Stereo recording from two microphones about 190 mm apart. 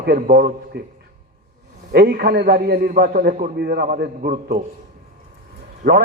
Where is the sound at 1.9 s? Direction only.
55° right (ahead or behind).